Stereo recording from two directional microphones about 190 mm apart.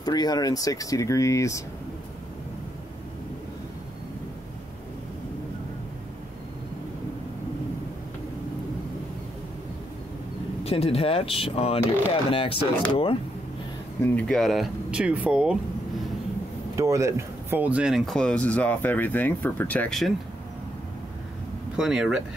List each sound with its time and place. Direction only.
0.0 s speech: 20° left (ahead or behind)
10.6 s speech: 30° left (ahead or behind)
14.0 s speech: 5° left (ahead or behind)
16.7 s speech: 15° right (ahead or behind); by 20.1 s 5° left (ahead or behind)
21.7 s speech: centre (ahead or behind)